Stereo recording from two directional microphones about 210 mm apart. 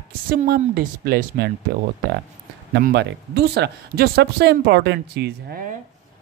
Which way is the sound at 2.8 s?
55° right (ahead or behind).